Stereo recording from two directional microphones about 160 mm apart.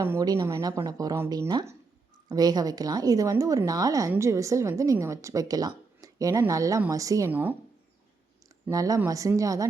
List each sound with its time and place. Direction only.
0.0 s a woman's voice: 20° right (ahead or behind)
8.7 s a woman's voice: 20° right (ahead or behind)